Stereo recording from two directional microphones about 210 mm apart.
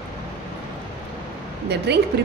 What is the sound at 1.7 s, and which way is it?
Speech, 50° right (ahead or behind).